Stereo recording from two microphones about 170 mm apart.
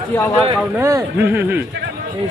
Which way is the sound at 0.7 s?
15° right (ahead or behind).